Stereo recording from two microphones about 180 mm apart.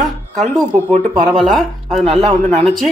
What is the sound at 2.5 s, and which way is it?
Speech, 35° right (ahead or behind).